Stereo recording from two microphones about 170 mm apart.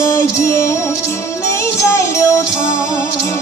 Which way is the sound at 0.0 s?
15° left (ahead or behind).